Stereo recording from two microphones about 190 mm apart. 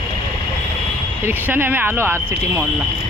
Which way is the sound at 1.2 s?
10° right (ahead or behind).